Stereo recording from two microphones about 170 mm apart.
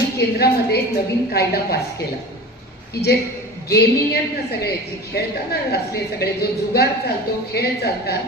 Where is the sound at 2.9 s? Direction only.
70° left (ahead or behind).